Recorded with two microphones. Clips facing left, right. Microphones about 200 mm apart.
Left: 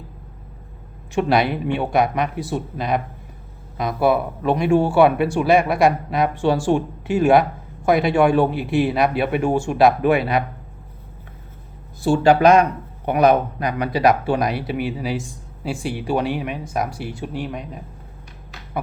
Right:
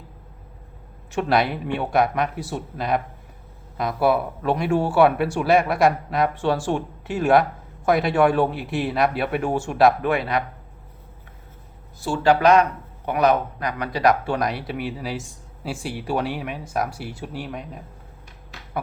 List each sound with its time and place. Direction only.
1.3 s speech: centre (ahead or behind)
12.0 s speech: 15° left (ahead or behind)